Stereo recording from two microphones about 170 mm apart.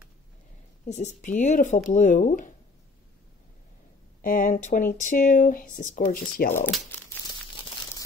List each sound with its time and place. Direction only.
0.8 s speech: 45° left (ahead or behind)
4.2 s speech: 55° left (ahead or behind)